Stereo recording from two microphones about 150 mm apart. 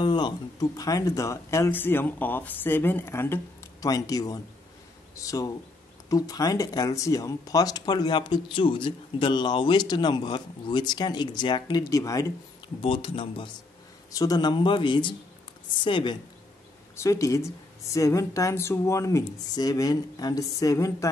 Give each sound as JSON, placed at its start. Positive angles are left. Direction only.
{"t": 0.0, "sound": "speech", "side_deg": 30}
{"t": 12.8, "sound": "speech", "side_deg": 35}
{"t": 14.1, "sound": "speech", "side_deg": 25}
{"t": 16.9, "sound": "speech", "side_deg": 20}